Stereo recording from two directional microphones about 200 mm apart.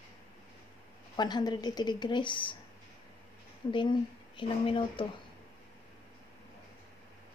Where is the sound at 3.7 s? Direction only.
25° left (ahead or behind).